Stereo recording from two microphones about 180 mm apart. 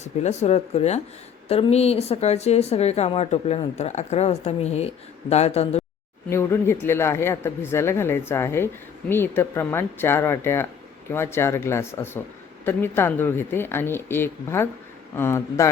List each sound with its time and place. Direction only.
0.0 s speech: 40° left (ahead or behind)
6.3 s speech: 15° left (ahead or behind)